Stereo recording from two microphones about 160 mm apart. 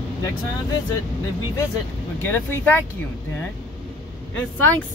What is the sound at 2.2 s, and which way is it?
Speech, 15° left (ahead or behind).